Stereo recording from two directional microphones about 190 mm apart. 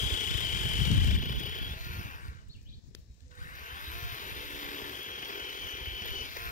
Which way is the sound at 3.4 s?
45° left (ahead or behind).